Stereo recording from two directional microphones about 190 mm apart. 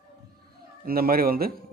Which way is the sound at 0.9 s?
50° right (ahead or behind).